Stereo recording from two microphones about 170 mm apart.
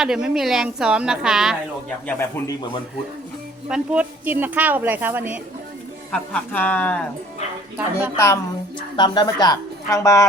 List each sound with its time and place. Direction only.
0.0 s a woman's voice: 5° right (ahead or behind)
2.0 s speech: 15° left (ahead or behind)
3.7 s a woman's voice: 10° right (ahead or behind)
6.1 s speech: 10° left (ahead or behind)
7.8 s a woman's voice: 10° right (ahead or behind)
8.1 s a woman's voice: 15° left (ahead or behind)